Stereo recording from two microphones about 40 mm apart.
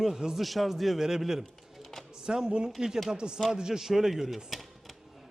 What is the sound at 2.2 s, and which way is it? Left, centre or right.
A man's voice, centre.